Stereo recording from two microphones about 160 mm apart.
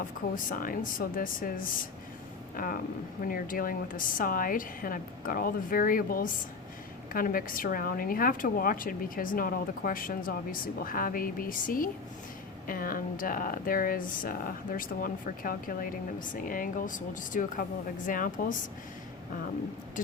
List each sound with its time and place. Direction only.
0.3 s speech: 60° left (ahead or behind)